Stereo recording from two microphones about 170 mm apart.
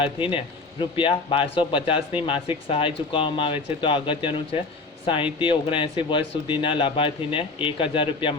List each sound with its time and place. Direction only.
0.0 s speech: 30° left (ahead or behind)